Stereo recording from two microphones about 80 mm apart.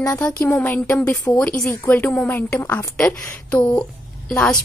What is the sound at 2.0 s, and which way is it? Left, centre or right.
A woman's voice, left.